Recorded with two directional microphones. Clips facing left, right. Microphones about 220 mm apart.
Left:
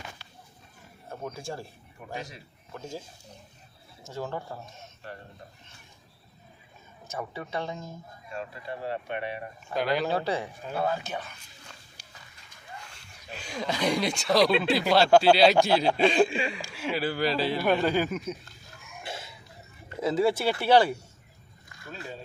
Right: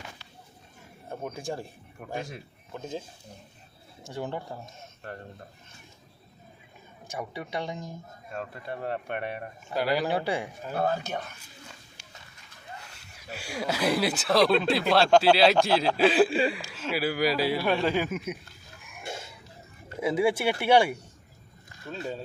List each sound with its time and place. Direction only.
1.2 s speech: 20° right (ahead or behind)
2.1 s speech: 55° right (ahead or behind)
4.1 s speech: 15° right (ahead or behind)
7.2 s speech: 15° right (ahead or behind)
8.3 s speech: 50° right (ahead or behind)
9.7 s speech: 10° right (ahead or behind)
10.7 s speech: 45° right (ahead or behind)
12.0 s dog: 35° left (ahead or behind)
13.0 s speech: 10° right (ahead or behind)
16.6 s speech: 10° left (ahead or behind)
16.9 s speech: 10° right (ahead or behind)
20.0 s speech: 10° right (ahead or behind)